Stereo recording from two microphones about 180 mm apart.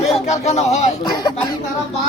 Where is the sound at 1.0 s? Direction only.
20° left (ahead or behind).